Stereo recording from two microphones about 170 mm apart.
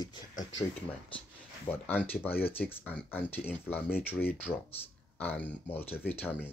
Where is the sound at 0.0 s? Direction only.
25° left (ahead or behind).